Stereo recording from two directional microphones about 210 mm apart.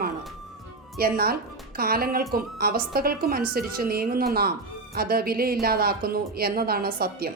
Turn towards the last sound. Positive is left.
turn(degrees=-45)  # may be behind; listen again after turning